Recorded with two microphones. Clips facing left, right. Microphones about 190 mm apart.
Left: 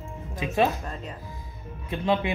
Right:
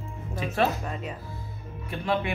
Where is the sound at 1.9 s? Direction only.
20° left (ahead or behind).